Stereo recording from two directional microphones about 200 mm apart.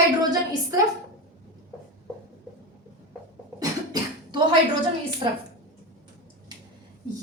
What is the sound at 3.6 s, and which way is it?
Cough, 20° right (ahead or behind).